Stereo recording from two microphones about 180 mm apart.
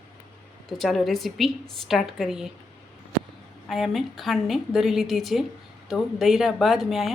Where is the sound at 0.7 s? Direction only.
Centre (ahead or behind).